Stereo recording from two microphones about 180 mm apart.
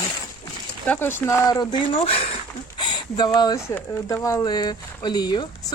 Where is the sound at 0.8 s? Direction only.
10° left (ahead or behind).